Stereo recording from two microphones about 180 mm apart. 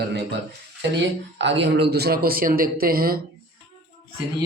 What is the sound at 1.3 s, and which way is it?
A man's voice, 80° right.